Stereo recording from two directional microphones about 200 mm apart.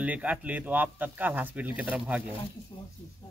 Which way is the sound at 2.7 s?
20° left (ahead or behind).